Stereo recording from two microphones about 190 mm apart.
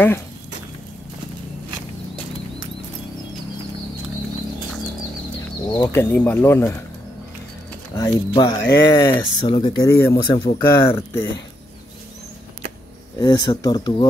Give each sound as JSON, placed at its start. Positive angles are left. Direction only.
{"t": 5.9, "sound": "speech", "side_deg": 10}
{"t": 7.9, "sound": "speech", "side_deg": 20}
{"t": 13.2, "sound": "speech", "side_deg": 20}